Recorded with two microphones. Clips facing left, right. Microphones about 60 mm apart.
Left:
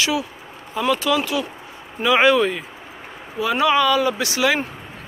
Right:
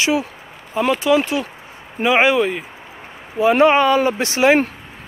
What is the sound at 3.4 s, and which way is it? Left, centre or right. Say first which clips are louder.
Speech: right 5 dB; right.